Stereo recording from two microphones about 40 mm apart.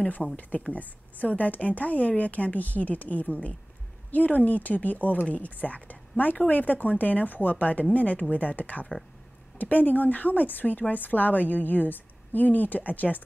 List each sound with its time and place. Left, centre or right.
0.4 s a woman's voice: left